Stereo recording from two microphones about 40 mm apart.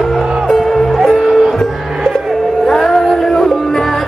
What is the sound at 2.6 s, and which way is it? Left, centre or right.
Music, centre.